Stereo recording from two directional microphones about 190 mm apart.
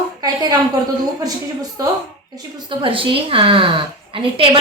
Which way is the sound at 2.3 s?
25° right (ahead or behind).